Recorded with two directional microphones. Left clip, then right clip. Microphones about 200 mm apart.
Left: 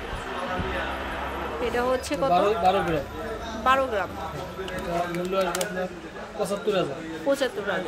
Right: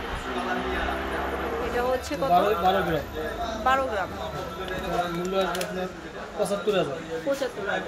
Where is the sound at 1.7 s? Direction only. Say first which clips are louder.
Left 2 dB; 15° left (ahead or behind).